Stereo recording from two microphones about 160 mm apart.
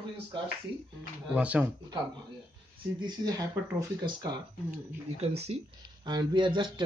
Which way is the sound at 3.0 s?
25° right (ahead or behind).